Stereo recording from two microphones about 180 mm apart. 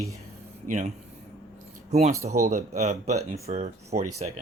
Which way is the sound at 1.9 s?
35° right (ahead or behind).